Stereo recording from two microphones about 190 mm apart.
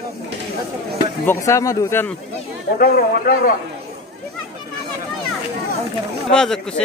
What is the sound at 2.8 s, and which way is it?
Speech, 50° left (ahead or behind).